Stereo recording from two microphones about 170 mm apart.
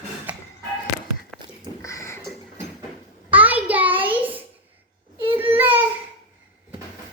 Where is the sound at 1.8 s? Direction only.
20° left (ahead or behind).